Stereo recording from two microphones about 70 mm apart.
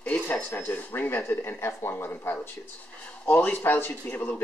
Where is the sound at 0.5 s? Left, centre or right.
Left.